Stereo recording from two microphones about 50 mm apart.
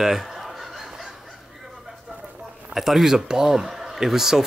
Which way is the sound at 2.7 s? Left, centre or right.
Centre.